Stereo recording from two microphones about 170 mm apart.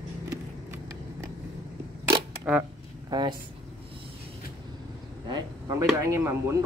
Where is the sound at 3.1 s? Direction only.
25° right (ahead or behind).